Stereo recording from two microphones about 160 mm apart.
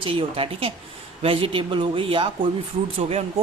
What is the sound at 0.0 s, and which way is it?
Speech, 35° right (ahead or behind).